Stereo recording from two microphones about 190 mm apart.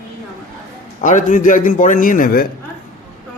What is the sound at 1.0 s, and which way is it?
A man's voice, 40° left (ahead or behind).